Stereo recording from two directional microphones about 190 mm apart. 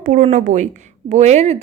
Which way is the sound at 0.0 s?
40° right (ahead or behind).